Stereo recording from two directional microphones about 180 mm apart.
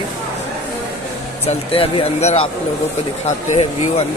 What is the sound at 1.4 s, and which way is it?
Speech, 35° left (ahead or behind).